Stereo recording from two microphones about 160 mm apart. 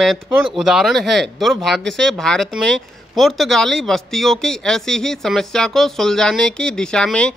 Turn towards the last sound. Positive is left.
turn(degrees=5)  # may be behind; listen again after turning